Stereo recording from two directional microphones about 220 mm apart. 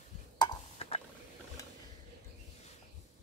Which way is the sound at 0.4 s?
25° left (ahead or behind).